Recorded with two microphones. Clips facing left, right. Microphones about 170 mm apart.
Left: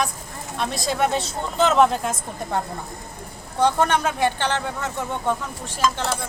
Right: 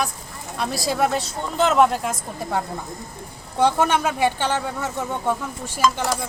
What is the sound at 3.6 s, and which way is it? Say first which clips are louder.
Speech: right 1 dB; 10° right (ahead or behind).